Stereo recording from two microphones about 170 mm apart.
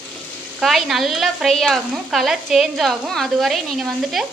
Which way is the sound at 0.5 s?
Centre (ahead or behind).